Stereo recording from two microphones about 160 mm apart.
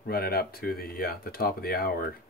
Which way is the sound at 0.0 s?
70° left (ahead or behind).